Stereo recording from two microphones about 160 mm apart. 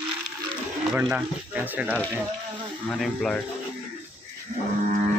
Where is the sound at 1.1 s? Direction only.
10° right (ahead or behind).